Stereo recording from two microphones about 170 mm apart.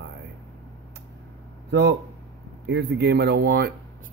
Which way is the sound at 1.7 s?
90° right.